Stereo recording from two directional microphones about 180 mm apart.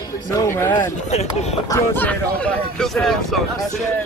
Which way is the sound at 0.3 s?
15° left (ahead or behind).